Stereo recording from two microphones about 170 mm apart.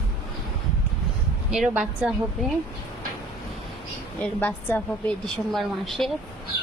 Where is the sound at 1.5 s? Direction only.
5° right (ahead or behind).